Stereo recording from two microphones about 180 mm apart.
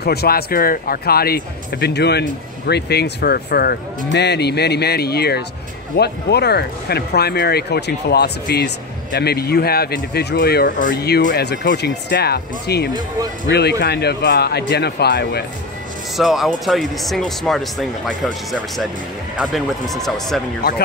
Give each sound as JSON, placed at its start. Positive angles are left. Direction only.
{"t": 0.0, "sound": "speech", "side_deg": 60}
{"t": 16.2, "sound": "speech", "side_deg": 0}